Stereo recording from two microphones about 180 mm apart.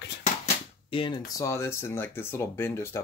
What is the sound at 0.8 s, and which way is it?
Speech, 30° left (ahead or behind).